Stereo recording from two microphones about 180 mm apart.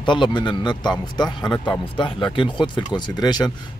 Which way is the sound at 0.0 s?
25° left (ahead or behind).